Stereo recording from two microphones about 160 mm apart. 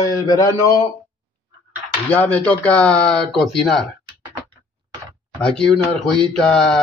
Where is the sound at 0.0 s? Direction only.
20° left (ahead or behind).